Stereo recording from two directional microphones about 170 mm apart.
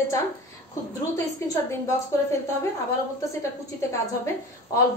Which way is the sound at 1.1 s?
15° left (ahead or behind).